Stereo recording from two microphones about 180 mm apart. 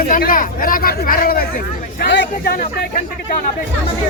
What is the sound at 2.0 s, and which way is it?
Speech, 65° left (ahead or behind).